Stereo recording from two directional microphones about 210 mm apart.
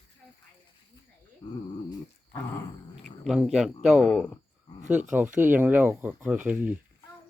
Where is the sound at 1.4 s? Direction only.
20° left (ahead or behind).